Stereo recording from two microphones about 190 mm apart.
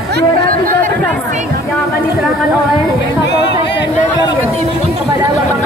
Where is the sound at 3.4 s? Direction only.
65° left (ahead or behind).